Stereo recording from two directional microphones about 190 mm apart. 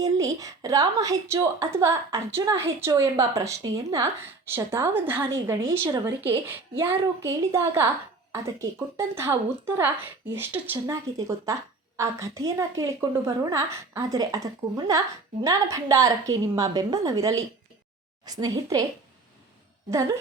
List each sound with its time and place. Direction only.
0.0 s a woman's voice: 20° right (ahead or behind)